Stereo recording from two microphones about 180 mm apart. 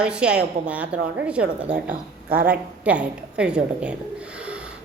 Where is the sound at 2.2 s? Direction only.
55° right (ahead or behind).